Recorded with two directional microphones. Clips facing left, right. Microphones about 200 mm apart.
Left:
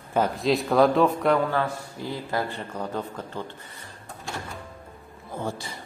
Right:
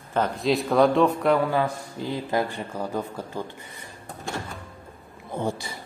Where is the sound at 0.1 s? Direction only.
5° left (ahead or behind).